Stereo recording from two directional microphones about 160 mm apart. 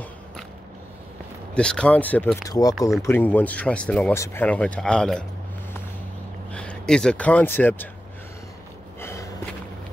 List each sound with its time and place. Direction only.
1.5 s speech: 5° left (ahead or behind)
2.4 s speech: 25° left (ahead or behind); by 5.2 s 5° left (ahead or behind)
6.5 s speech: 5° left (ahead or behind)
9.0 s gasp: 20° left (ahead or behind)